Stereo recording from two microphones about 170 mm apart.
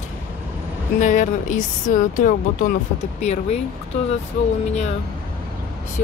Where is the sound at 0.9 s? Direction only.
50° left (ahead or behind).